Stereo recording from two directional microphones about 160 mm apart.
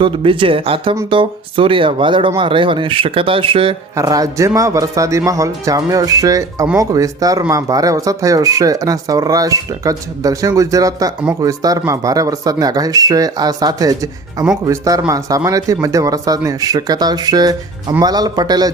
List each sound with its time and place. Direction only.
0.0 s speech: 30° right (ahead or behind)
3.9 s speech: 20° right (ahead or behind)